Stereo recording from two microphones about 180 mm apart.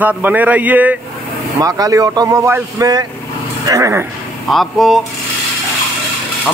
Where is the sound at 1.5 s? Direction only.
20° right (ahead or behind).